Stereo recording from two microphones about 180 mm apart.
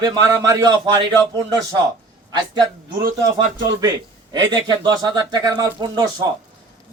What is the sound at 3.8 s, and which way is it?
A man's voice, 20° right (ahead or behind).